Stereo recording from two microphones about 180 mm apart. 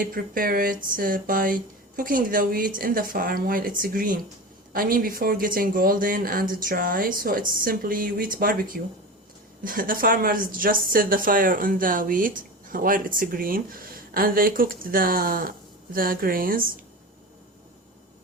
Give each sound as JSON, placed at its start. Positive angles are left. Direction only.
{"t": 0.0, "sound": "speech", "side_deg": -50}